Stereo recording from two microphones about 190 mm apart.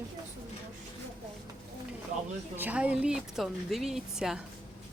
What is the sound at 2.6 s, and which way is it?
Speech, 5° right (ahead or behind).